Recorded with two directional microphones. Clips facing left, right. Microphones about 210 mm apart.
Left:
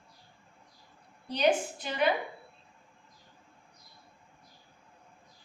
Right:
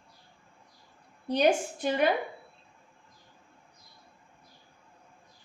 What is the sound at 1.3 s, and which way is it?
Speech, 50° right (ahead or behind).